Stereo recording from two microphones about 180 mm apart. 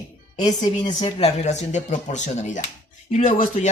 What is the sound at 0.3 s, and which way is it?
Speech, 20° left (ahead or behind).